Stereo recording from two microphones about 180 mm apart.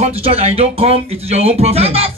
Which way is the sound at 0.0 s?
35° right (ahead or behind).